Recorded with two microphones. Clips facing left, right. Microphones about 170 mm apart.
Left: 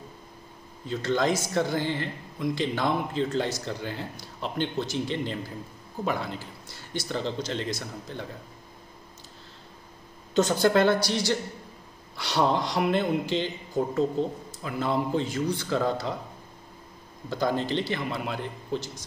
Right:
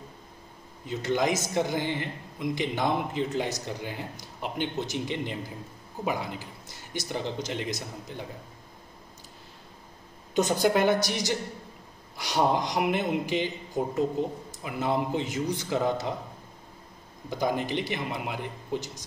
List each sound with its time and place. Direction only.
0.8 s speech: 15° right (ahead or behind)
10.3 s speech: 15° right (ahead or behind)
17.3 s speech: 15° right (ahead or behind)